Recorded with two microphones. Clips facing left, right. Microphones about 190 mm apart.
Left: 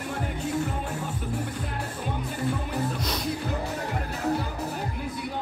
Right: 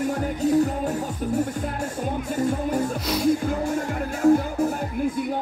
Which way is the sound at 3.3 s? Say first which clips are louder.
Right 12 dB; 50° right (ahead or behind).